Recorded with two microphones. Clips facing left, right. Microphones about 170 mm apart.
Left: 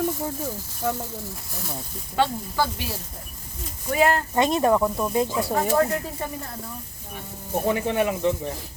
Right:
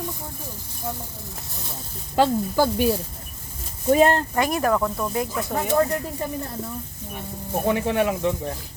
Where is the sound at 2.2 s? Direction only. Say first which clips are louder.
Right 4 dB; 50° right (ahead or behind).